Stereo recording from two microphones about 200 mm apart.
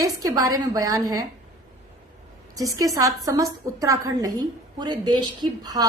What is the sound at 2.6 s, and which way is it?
A woman's voice, 15° right (ahead or behind).